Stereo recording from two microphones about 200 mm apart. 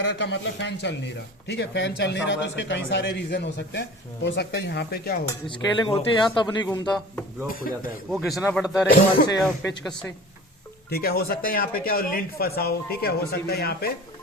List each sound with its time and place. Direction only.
0.0 s a man's voice: 60° left (ahead or behind)
5.5 s speech: 25° left (ahead or behind)
7.4 s speech: 45° left (ahead or behind)
8.1 s speech: 5° right (ahead or behind)
9.0 s speech: 45° left (ahead or behind)
9.4 s speech: centre (ahead or behind)
10.8 s speech: 50° left (ahead or behind)